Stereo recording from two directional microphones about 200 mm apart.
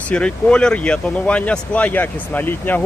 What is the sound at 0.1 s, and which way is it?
Speech, 5° left (ahead or behind).